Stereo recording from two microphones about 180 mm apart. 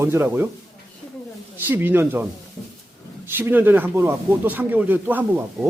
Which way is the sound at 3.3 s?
10° right (ahead or behind).